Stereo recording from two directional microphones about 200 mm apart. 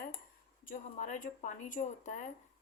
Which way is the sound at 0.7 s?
35° left (ahead or behind).